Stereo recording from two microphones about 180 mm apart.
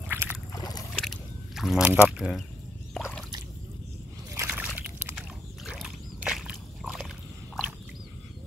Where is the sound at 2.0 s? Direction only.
5° right (ahead or behind).